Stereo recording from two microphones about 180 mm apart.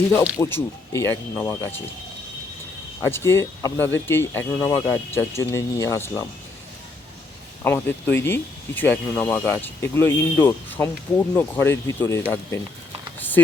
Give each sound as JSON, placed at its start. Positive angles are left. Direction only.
{"t": 0.1, "sound": "speech", "side_deg": 15}
{"t": 3.0, "sound": "speech", "side_deg": 15}
{"t": 7.6, "sound": "speech", "side_deg": 10}
{"t": 13.1, "sound": "a sound", "side_deg": 10}